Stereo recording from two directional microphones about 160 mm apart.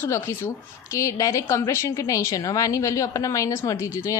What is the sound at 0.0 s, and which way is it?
A woman's voice, 15° left (ahead or behind).